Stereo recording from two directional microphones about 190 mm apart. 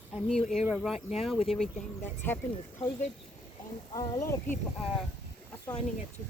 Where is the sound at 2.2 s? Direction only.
10° left (ahead or behind).